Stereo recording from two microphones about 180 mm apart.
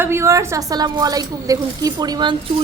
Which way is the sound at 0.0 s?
15° right (ahead or behind).